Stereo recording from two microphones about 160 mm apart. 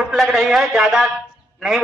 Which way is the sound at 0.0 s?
Centre (ahead or behind).